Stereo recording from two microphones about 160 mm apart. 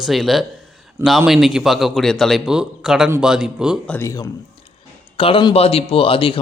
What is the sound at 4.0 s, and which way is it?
Speech, 20° left (ahead or behind).